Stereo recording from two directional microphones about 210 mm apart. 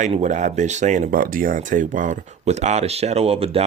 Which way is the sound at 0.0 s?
35° right (ahead or behind).